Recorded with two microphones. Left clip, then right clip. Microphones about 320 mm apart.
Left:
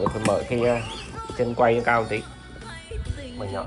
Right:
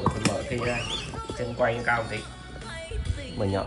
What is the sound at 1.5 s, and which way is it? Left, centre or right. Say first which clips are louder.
Speech: left 5 dB; centre.